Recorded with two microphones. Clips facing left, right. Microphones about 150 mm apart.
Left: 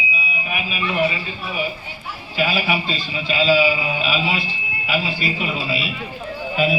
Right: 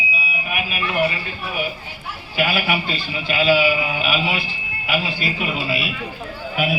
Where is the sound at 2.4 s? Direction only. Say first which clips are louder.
Even; 60° right (ahead or behind).